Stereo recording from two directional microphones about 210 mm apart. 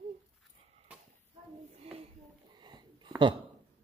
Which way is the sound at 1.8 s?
30° right (ahead or behind).